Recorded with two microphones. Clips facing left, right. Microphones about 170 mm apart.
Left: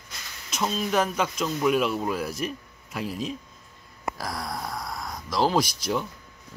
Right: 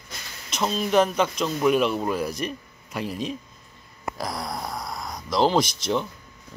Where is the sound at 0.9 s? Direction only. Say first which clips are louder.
Right 7 dB; 5° left (ahead or behind).